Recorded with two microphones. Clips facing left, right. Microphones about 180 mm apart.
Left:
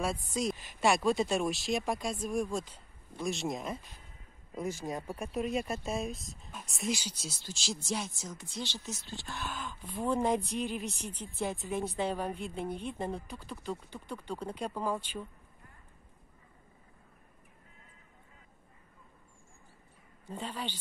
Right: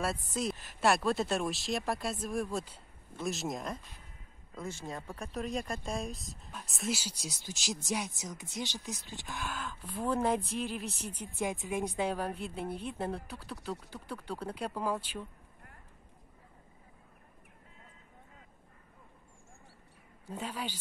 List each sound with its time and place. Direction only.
0.0 s speech: 5° right (ahead or behind)
4.6 s speech: 15° left (ahead or behind); by 15.0 s 5° right (ahead or behind)
20.2 s speech: 10° right (ahead or behind)